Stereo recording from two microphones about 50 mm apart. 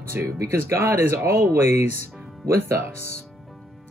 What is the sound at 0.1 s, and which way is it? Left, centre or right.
Speech, right.